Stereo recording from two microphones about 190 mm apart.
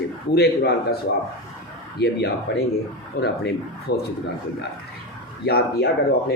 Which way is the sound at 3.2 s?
55° left (ahead or behind).